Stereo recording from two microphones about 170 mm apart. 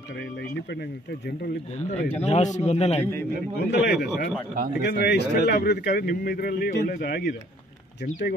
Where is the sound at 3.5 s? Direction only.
75° left (ahead or behind).